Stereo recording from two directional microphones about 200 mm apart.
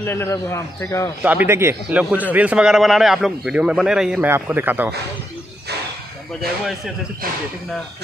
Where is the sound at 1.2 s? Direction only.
10° right (ahead or behind).